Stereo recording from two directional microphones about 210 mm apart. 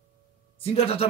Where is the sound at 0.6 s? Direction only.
30° left (ahead or behind).